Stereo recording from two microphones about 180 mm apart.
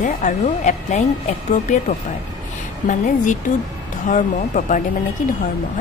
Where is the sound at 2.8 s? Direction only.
45° left (ahead or behind).